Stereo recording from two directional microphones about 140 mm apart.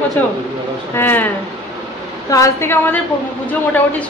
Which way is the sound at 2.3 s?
20° left (ahead or behind).